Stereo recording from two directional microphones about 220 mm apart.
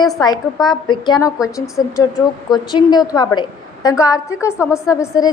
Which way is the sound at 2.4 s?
20° left (ahead or behind).